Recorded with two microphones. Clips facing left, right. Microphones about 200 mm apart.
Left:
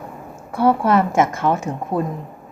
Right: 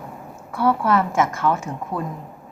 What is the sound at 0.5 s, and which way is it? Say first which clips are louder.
A woman's voice: left 3 dB; 20° left (ahead or behind).